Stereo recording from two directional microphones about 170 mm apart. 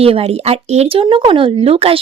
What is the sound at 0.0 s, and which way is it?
Speech, 35° right (ahead or behind).